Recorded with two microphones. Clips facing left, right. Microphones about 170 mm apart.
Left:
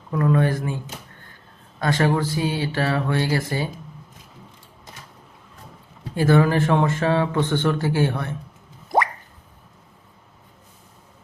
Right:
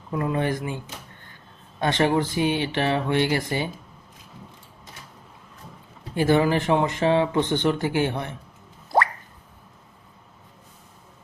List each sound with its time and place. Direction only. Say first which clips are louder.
0.1 s speech: left 4 dB; 10° right (ahead or behind)
1.8 s speech: even; 20° right (ahead or behind)
6.1 s speech: left 2 dB; 15° right (ahead or behind)